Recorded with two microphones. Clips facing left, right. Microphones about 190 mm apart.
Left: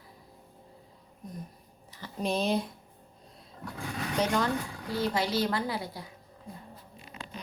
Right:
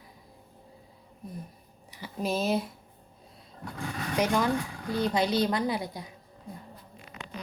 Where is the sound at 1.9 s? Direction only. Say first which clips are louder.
Right 1 dB; 5° right (ahead or behind).